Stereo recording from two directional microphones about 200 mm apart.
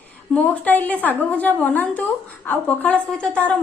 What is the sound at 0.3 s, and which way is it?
A woman's voice, 10° left (ahead or behind).